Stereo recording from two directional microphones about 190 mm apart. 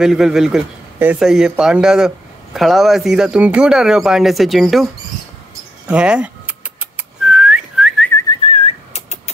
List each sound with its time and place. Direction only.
0.0 s speech: centre (ahead or behind)
5.9 s whistling: 5° right (ahead or behind)
8.5 s whistling: 30° left (ahead or behind)